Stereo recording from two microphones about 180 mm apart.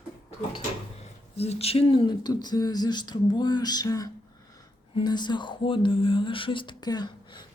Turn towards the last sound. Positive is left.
turn(degrees=25)  # may be behind; listen again after turning